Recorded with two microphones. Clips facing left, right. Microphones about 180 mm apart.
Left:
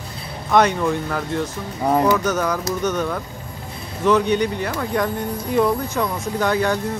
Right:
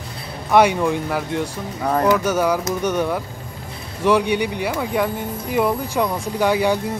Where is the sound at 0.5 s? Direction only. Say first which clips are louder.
Right 2 dB; 10° right (ahead or behind).